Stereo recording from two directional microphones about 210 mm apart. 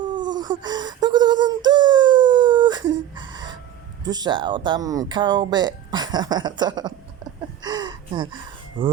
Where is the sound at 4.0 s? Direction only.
20° right (ahead or behind).